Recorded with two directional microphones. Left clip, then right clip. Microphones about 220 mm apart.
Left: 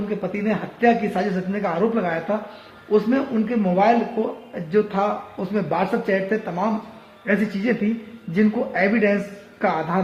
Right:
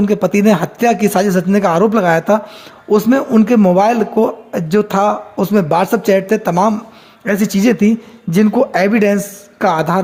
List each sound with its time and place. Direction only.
0.1 s a man's voice: 50° right (ahead or behind)